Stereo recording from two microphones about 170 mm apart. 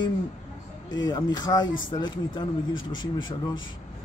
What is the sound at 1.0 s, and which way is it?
A man's voice, 25° left (ahead or behind).